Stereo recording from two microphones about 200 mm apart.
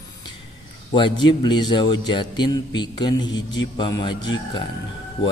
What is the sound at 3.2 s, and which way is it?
Speech, 70° left (ahead or behind).